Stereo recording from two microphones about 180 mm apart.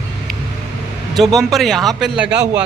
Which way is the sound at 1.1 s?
Centre (ahead or behind).